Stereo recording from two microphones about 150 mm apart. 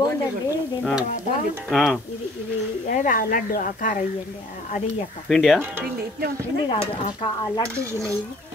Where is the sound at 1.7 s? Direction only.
Centre (ahead or behind).